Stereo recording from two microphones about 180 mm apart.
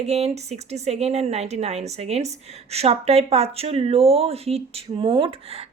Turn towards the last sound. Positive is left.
turn(degrees=-30)  # may be behind; listen again after turning